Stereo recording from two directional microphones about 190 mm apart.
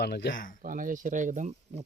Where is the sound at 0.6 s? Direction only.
45° right (ahead or behind).